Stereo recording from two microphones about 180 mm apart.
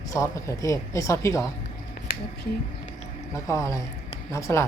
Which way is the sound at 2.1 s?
55° left (ahead or behind).